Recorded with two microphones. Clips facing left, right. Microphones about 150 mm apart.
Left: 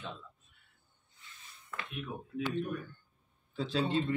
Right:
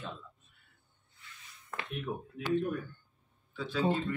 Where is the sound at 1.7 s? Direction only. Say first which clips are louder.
Right 2 dB; 40° right (ahead or behind).